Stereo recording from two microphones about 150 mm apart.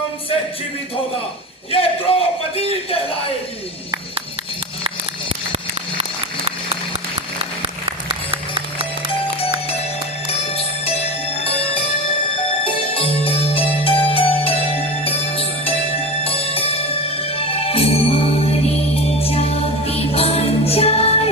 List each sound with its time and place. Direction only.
1.7 s a man's voice: 40° left (ahead or behind)
6.0 s a sound: 40° right (ahead or behind)
10.5 s music: 40° left (ahead or behind)